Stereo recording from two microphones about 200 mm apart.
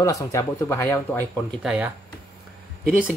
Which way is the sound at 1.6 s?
5° right (ahead or behind).